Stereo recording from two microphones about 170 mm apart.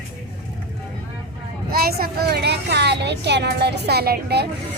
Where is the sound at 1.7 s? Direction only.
60° right (ahead or behind).